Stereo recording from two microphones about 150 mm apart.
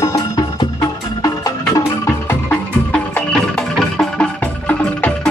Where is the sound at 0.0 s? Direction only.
25° left (ahead or behind).